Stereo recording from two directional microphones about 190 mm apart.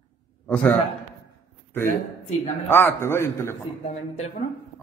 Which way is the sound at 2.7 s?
10° left (ahead or behind).